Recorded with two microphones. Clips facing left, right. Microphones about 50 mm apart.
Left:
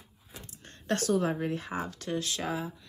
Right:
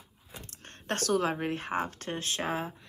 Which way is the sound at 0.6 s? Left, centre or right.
Right.